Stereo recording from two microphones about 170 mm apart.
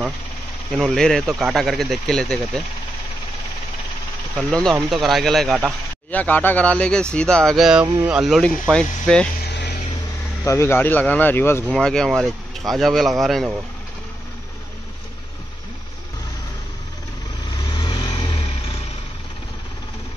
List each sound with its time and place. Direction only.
0.7 s speech: centre (ahead or behind)
4.4 s speech: centre (ahead or behind)
9.4 s a sound: 80° left
10.4 s speech: 15° left (ahead or behind); by 13.5 s centre (ahead or behind)
17.6 s vehicle: 25° left (ahead or behind)